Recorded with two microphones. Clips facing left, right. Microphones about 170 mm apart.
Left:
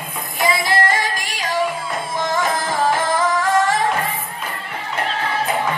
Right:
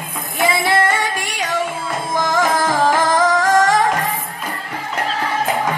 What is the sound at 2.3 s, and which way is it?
Music, 90° right.